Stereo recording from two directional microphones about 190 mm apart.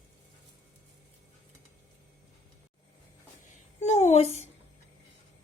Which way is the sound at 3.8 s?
35° left (ahead or behind).